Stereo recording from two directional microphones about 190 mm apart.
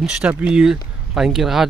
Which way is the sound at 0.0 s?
5° right (ahead or behind).